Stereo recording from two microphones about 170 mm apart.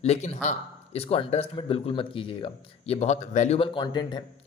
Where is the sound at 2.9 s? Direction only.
40° left (ahead or behind).